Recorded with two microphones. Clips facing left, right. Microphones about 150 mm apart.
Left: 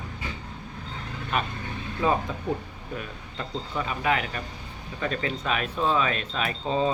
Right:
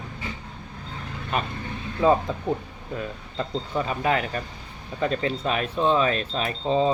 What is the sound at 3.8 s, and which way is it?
Speech, 35° right (ahead or behind).